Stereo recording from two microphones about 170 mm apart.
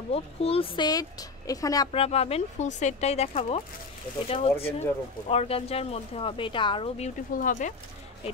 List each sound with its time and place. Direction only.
0.1 s speech: 35° left (ahead or behind)
1.9 s speech: 35° left (ahead or behind)
7.4 s speech: 45° left (ahead or behind)